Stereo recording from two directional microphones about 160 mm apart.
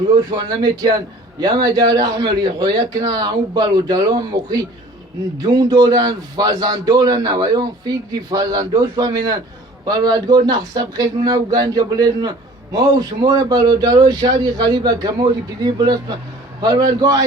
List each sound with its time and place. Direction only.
0.3 s a man's voice: 25° right (ahead or behind)